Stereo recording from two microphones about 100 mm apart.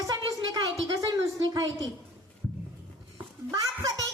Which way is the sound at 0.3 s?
40° right (ahead or behind).